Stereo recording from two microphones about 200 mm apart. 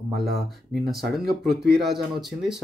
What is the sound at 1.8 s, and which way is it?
Speech, centre (ahead or behind).